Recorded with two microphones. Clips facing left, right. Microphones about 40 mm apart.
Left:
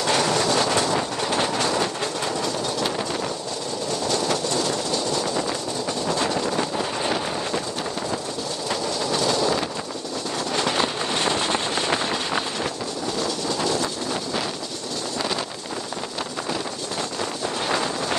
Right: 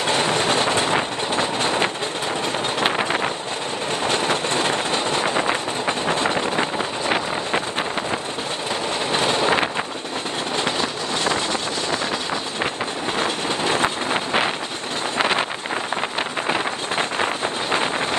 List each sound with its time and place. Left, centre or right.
0.0 s train: right
4.0 s vehicle: right
9.1 s vehicle: right
13.2 s vehicle: right
15.1 s wind noise: right
17.2 s wind noise: right